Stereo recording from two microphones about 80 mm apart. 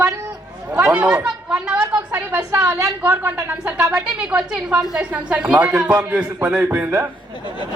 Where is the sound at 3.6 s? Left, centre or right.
Centre.